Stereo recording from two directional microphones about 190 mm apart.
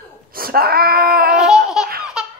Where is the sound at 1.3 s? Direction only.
Centre (ahead or behind).